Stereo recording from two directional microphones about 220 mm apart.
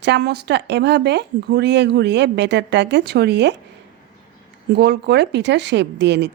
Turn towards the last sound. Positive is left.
turn(degrees=-50)  # may be behind; listen again after turning